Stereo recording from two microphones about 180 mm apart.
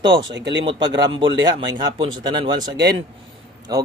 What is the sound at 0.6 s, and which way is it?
Speech, 25° right (ahead or behind).